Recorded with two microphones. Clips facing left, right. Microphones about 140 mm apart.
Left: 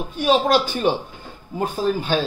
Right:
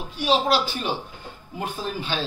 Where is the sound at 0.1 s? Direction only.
50° left (ahead or behind).